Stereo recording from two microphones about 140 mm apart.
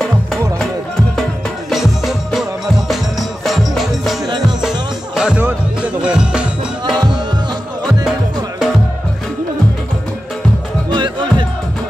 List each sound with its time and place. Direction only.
1.7 s music: centre (ahead or behind)
10.9 s music: 35° right (ahead or behind)